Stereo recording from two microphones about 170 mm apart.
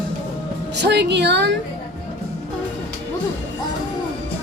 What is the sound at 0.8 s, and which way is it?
Speech, 85° right.